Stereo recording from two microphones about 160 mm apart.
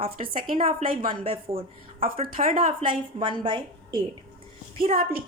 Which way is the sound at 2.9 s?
30° right (ahead or behind).